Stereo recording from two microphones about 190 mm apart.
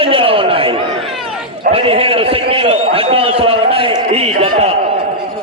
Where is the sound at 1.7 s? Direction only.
30° right (ahead or behind).